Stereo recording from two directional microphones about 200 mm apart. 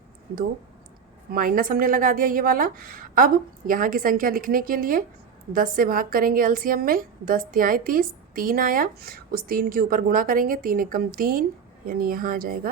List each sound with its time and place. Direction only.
1.3 s a woman's voice: 45° right (ahead or behind)